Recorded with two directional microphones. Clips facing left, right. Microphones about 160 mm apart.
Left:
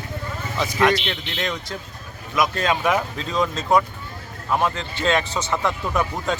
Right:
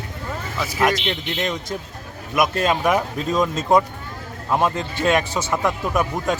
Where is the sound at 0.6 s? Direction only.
5° right (ahead or behind).